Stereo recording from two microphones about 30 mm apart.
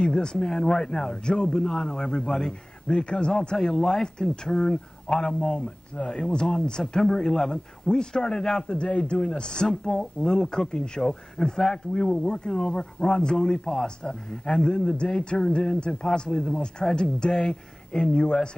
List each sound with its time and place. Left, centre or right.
0.1 s speech: left
0.5 s a man's voice: centre
2.9 s speech: left
3.6 s a man's voice: centre
7.9 s a man's voice: left
8.6 s a man's voice: left
9.4 s a man's voice: left
11.9 s speech: left
15.9 s a man's voice: centre